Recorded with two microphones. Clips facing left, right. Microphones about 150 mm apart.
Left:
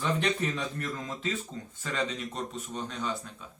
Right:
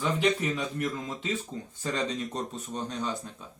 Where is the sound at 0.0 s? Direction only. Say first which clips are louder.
Right 2 dB; 10° right (ahead or behind).